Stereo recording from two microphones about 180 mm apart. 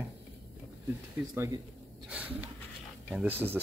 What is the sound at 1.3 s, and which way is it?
Speech, 15° right (ahead or behind).